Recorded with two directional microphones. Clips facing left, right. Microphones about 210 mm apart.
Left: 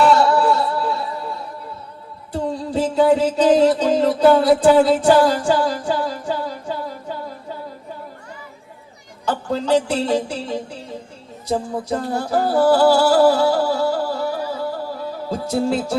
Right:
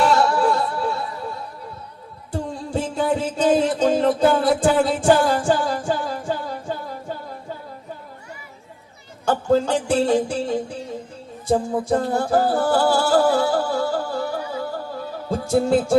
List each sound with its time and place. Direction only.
0.1 s music: 50° right (ahead or behind)
2.3 s music: 50° right (ahead or behind)
9.2 s a woman's voice: 45° right (ahead or behind)
11.4 s music: 50° right (ahead or behind)